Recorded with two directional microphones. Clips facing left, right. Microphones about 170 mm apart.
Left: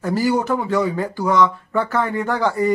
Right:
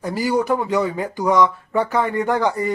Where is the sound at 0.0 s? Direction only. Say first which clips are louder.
Left 1 dB; 15° right (ahead or behind).